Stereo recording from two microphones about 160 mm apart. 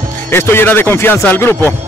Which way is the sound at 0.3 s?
15° left (ahead or behind).